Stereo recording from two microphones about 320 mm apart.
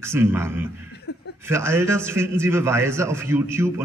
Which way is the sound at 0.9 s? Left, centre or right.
Left.